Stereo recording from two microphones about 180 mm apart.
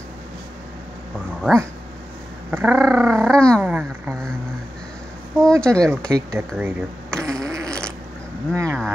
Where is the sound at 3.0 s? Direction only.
15° right (ahead or behind).